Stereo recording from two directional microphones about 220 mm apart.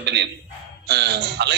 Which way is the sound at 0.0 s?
50° right (ahead or behind).